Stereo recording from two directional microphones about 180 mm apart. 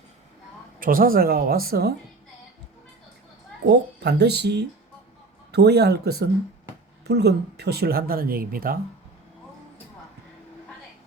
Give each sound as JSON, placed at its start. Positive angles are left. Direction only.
{"t": 0.8, "sound": "speech", "side_deg": -50}
{"t": 3.7, "sound": "speech", "side_deg": -65}